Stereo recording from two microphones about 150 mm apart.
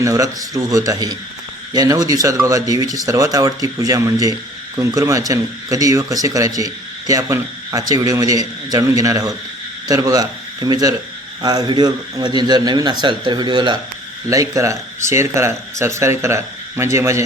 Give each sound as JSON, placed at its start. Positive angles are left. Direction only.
{"t": 0.0, "sound": "speech", "side_deg": -20}